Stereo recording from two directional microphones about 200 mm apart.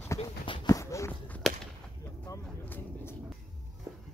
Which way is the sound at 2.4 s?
10° left (ahead or behind).